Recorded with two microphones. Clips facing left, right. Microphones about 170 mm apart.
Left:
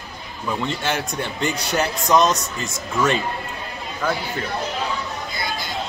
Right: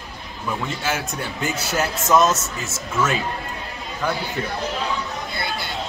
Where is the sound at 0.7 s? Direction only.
5° right (ahead or behind).